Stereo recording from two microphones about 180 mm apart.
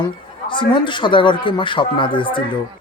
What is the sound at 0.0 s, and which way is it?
Speech, 25° left (ahead or behind).